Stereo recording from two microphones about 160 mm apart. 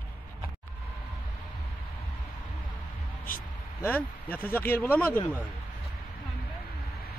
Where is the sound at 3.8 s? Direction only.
10° left (ahead or behind).